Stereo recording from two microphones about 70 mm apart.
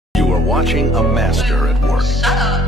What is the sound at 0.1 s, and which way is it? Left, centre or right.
Speech, centre.